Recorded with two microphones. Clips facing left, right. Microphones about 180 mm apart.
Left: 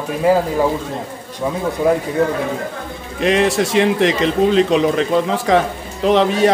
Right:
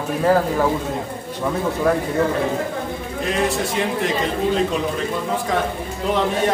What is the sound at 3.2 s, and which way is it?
A man's voice, 90° left.